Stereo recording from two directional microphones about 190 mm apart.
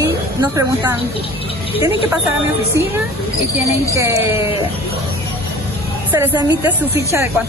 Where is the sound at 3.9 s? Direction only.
15° right (ahead or behind).